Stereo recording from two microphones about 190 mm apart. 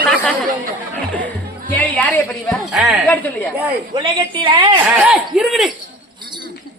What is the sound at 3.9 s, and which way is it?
Speech, 25° right (ahead or behind).